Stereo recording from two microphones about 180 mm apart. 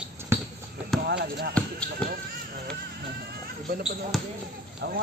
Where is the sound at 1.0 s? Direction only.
65° right (ahead or behind).